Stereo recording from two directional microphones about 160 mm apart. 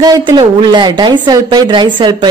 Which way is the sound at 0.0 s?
25° right (ahead or behind).